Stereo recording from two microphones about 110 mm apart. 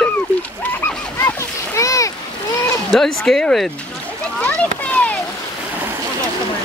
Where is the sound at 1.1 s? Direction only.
25° left (ahead or behind).